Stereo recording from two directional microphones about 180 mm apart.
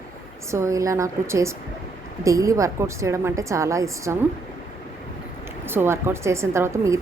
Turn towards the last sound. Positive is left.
turn(degrees=-15)  # may be behind; listen again after turning